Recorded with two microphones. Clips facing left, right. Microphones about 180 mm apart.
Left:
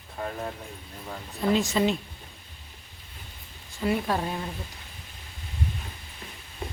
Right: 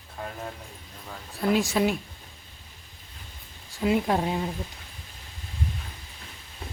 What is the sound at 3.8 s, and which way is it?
Speech, 20° right (ahead or behind).